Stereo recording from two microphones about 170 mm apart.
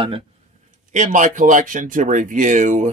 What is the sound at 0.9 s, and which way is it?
A man's voice, 45° right (ahead or behind).